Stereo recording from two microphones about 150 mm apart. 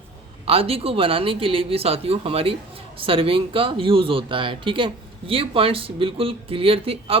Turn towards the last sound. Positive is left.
turn(degrees=-40)  # may be behind; listen again after turning